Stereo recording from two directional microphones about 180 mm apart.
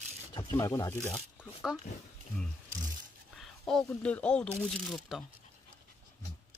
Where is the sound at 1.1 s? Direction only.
Centre (ahead or behind).